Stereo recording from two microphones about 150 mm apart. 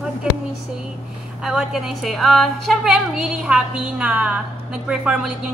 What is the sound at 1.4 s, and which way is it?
A woman's voice, 5° right (ahead or behind).